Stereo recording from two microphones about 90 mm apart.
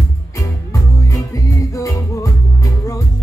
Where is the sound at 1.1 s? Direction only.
35° left (ahead or behind).